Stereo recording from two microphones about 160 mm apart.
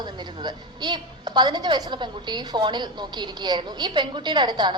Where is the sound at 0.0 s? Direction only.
30° right (ahead or behind).